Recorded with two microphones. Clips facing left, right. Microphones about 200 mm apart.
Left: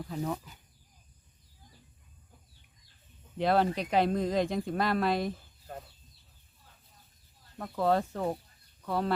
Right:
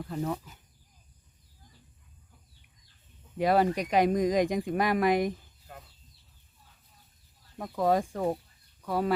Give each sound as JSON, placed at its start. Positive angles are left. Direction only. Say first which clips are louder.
{"t": 0.0, "sound": "speech", "louder": "right 2 dB", "side_deg": 0}
{"t": 3.3, "sound": "speech", "louder": "right 2 dB", "side_deg": -10}
{"t": 7.6, "sound": "speech", "louder": "right 1 dB", "side_deg": -15}